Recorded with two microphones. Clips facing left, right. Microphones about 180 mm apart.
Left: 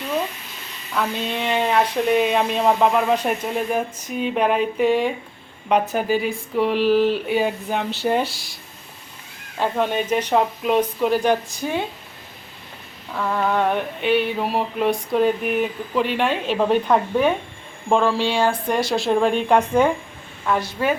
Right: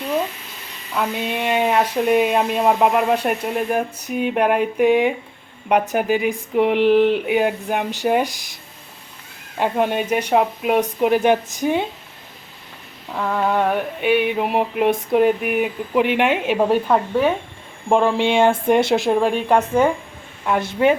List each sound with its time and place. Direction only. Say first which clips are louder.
0.9 s speech: right 1 dB; 10° right (ahead or behind)
9.6 s speech: right 2 dB; 15° right (ahead or behind)
13.1 s speech: right 1 dB; 10° right (ahead or behind)
19.1 s speech: left 3 dB; 5° right (ahead or behind)
20.5 s speech: right 4 dB; 20° right (ahead or behind)